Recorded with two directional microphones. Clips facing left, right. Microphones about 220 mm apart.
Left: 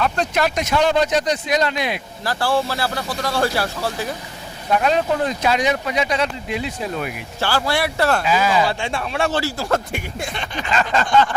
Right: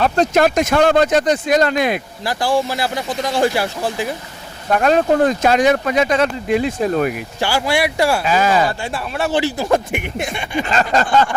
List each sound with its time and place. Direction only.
0.0 s speech: 45° right (ahead or behind)
2.2 s speech: 15° right (ahead or behind)
4.7 s speech: 50° right (ahead or behind)
7.3 s speech: 15° right (ahead or behind)
8.3 s speech: 45° right (ahead or behind)
8.8 s speech: 5° right (ahead or behind)
9.3 s speech: 20° right (ahead or behind)
10.7 s a sound: 40° right (ahead or behind)